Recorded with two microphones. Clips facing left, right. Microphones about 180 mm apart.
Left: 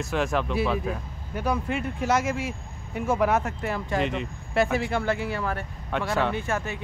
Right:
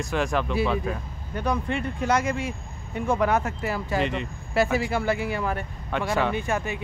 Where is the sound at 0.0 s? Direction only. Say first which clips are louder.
Even; centre (ahead or behind); by 5.7 s 15° right (ahead or behind).